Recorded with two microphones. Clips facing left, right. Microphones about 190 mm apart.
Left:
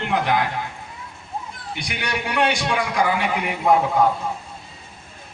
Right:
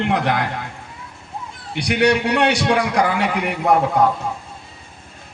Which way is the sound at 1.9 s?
70° right (ahead or behind).